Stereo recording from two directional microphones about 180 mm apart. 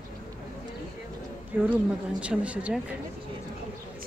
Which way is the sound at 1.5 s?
10° right (ahead or behind).